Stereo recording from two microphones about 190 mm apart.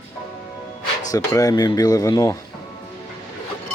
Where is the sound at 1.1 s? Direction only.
20° left (ahead or behind).